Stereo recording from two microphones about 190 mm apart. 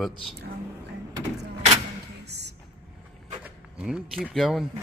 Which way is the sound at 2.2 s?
60° right (ahead or behind).